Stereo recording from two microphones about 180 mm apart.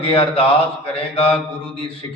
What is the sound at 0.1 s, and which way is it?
A man's voice, 30° left (ahead or behind).